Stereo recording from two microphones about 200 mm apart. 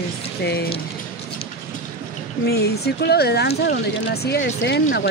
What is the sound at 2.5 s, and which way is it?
Speech, 55° left (ahead or behind).